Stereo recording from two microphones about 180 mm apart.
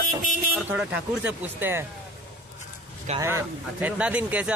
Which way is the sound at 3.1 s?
15° right (ahead or behind).